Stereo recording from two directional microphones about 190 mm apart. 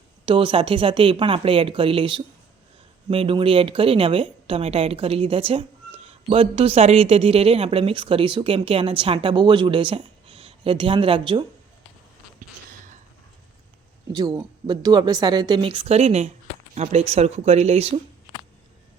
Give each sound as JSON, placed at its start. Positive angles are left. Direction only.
{"t": 0.3, "sound": "a woman's voice", "side_deg": -25}
{"t": 14.3, "sound": "a woman's voice", "side_deg": -20}